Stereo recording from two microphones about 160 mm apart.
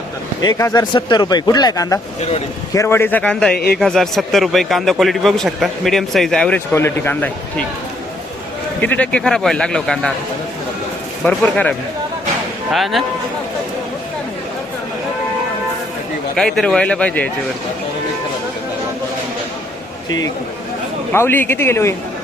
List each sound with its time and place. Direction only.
0.4 s a man's voice: 20° left (ahead or behind); by 6.6 s 5° left (ahead or behind)
6.7 s speech: 15° left (ahead or behind)
8.8 s a man's voice: 10° left (ahead or behind)
11.2 s speech: 10° left (ahead or behind)
12.7 s a man's voice: centre (ahead or behind)
16.3 s speech: centre (ahead or behind)
21.1 s speech: 15° left (ahead or behind)